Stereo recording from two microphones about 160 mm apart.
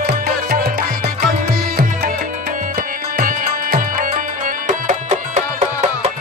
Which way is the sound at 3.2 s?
60° right (ahead or behind).